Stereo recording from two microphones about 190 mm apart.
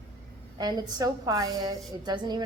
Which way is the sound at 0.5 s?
20° right (ahead or behind).